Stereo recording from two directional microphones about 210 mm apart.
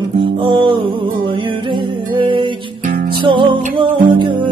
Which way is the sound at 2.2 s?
25° right (ahead or behind).